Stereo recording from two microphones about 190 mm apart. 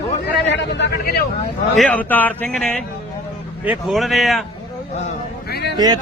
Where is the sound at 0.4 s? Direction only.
70° left (ahead or behind).